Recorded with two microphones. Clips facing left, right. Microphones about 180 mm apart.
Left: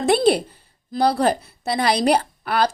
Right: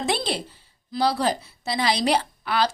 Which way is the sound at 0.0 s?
55° left (ahead or behind).